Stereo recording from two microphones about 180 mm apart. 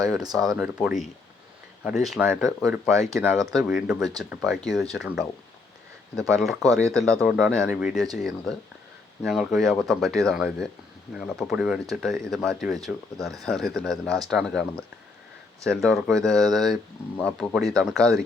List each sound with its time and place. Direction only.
0.0 s speech: 20° right (ahead or behind)
0.5 s speech: 5° right (ahead or behind)
2.9 s speech: 20° right (ahead or behind)
3.3 s speech: centre (ahead or behind)
6.4 s speech: centre (ahead or behind)
6.8 s speech: 15° right (ahead or behind)
7.2 s speech: centre (ahead or behind)